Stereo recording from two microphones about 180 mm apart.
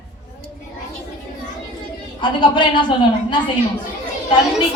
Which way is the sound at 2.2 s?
25° left (ahead or behind).